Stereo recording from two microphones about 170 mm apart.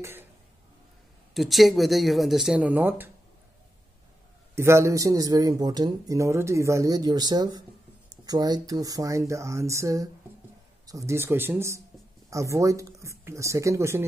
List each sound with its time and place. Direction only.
0.0 s speech: 10° right (ahead or behind)
1.3 s speech: centre (ahead or behind)
4.6 s speech: 15° right (ahead or behind)